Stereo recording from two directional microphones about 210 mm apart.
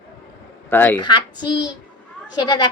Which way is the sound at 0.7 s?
10° left (ahead or behind).